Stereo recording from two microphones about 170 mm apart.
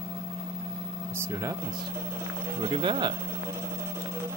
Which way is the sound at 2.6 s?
30° right (ahead or behind).